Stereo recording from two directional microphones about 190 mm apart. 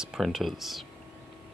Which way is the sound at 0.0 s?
Centre (ahead or behind).